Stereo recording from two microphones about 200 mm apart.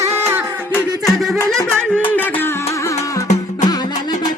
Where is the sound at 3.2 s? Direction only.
35° left (ahead or behind).